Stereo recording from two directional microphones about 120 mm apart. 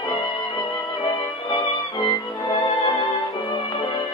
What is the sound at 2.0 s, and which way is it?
Music, 35° left (ahead or behind).